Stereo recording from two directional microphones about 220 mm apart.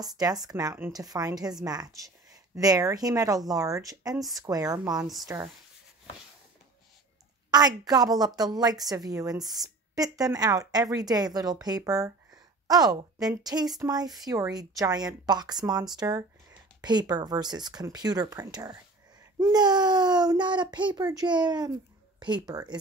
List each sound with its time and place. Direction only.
0.0 s a woman's voice: 15° right (ahead or behind)
7.5 s a woman's voice: 15° right (ahead or behind)